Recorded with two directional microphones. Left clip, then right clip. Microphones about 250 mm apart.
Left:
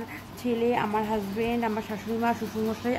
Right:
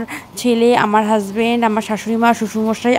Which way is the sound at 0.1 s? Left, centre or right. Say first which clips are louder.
Right 14 dB; right.